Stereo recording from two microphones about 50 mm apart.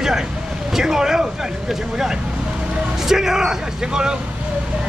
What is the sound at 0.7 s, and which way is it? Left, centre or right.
Vehicle, centre.